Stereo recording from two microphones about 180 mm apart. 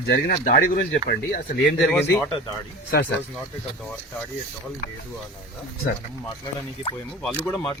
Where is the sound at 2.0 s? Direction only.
10° left (ahead or behind).